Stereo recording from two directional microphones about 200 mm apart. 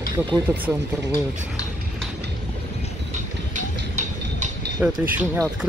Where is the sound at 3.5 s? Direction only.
40° right (ahead or behind).